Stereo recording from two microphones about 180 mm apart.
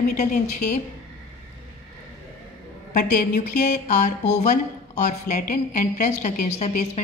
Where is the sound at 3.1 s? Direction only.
50° left (ahead or behind).